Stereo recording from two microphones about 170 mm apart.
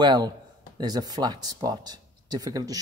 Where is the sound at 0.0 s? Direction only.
25° right (ahead or behind).